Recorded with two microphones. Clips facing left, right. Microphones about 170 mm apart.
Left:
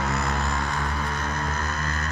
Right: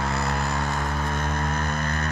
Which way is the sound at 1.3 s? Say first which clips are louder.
Right 2 dB; 55° right (ahead or behind).